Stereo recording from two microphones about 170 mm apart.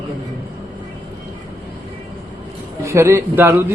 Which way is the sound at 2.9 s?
15° right (ahead or behind).